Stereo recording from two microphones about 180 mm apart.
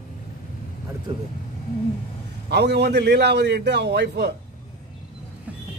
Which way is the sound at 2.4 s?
70° right (ahead or behind).